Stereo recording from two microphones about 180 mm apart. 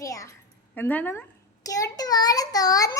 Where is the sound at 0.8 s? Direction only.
10° left (ahead or behind).